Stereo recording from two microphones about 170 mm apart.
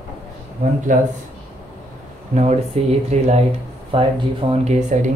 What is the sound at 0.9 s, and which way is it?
Speech, 50° right (ahead or behind).